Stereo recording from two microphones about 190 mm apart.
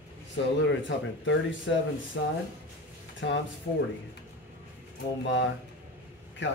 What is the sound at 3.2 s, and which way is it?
Speech, 70° left (ahead or behind).